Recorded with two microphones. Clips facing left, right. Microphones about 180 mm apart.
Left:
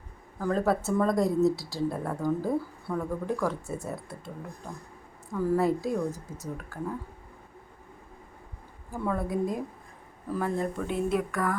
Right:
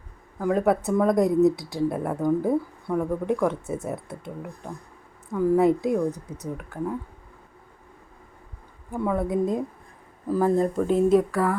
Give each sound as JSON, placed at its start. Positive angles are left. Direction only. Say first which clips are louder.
{"t": 0.3, "sound": "speech", "louder": "right 4 dB", "side_deg": -15}
{"t": 8.9, "sound": "speech", "louder": "right 5 dB", "side_deg": -20}
{"t": 10.3, "sound": "speech", "louder": "right 8 dB", "side_deg": -35}